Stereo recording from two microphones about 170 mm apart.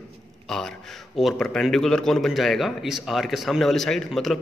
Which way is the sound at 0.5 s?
5° left (ahead or behind).